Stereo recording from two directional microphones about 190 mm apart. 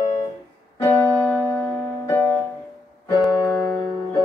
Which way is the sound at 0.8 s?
10° left (ahead or behind).